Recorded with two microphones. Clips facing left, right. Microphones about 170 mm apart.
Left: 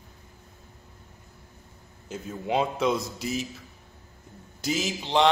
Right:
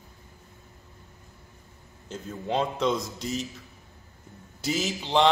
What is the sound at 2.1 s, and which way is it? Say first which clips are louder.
A man's voice: left 1 dB; 10° left (ahead or behind).